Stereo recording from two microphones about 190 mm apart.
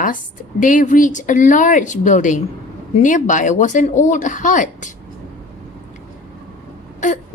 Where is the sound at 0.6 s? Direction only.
45° left (ahead or behind).